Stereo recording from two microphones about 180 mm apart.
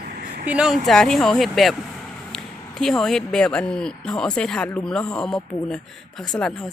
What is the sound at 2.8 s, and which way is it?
Speech, 5° left (ahead or behind).